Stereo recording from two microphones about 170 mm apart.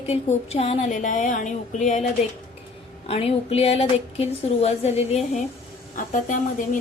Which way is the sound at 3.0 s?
35° left (ahead or behind).